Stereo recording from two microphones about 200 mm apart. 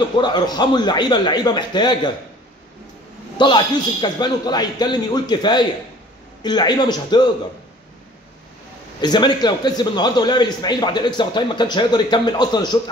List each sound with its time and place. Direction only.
0.2 s a man's voice: 20° left (ahead or behind)
3.3 s a man's voice: 25° left (ahead or behind)
9.0 s a man's voice: 20° left (ahead or behind)